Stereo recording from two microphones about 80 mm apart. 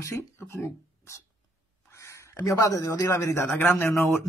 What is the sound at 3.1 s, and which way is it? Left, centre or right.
Speech, left.